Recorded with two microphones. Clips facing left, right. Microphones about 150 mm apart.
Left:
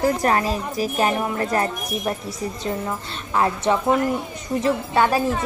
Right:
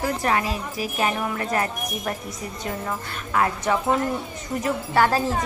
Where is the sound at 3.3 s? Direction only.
25° left (ahead or behind).